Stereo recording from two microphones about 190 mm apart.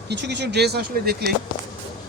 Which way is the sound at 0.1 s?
65° right (ahead or behind).